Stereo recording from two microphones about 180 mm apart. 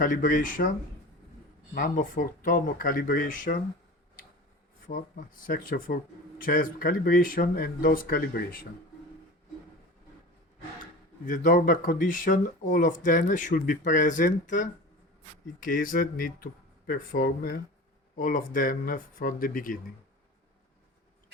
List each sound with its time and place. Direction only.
0.0 s speech: 50° left (ahead or behind)
1.7 s speech: 50° left (ahead or behind)
4.9 s speech: 50° left (ahead or behind)
11.3 s speech: 50° left (ahead or behind)